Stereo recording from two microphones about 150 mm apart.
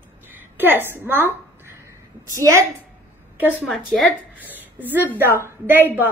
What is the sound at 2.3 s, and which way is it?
Speech, 20° right (ahead or behind).